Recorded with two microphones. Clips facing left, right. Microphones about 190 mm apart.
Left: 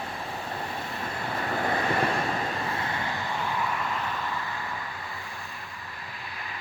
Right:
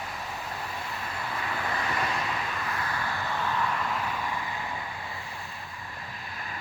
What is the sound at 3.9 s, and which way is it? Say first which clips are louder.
Vehicle: even; 10° right (ahead or behind).